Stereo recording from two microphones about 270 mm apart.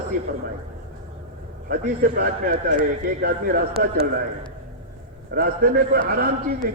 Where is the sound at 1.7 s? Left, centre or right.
Right.